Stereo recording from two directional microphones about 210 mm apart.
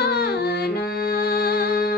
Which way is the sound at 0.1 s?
50° left (ahead or behind).